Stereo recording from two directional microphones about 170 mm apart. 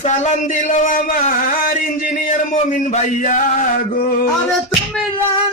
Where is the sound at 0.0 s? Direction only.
45° left (ahead or behind).